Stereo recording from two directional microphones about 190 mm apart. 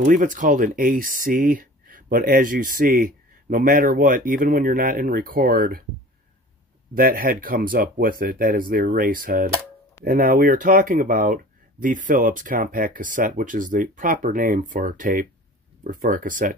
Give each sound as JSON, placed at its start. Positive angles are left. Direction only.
{"t": 0.0, "sound": "speech", "side_deg": -45}
{"t": 6.9, "sound": "speech", "side_deg": -50}